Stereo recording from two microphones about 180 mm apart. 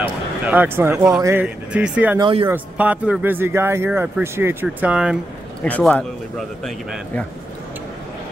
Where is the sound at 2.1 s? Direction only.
25° right (ahead or behind).